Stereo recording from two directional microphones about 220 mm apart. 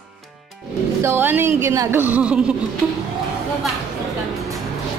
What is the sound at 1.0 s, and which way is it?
A woman's voice, 10° right (ahead or behind).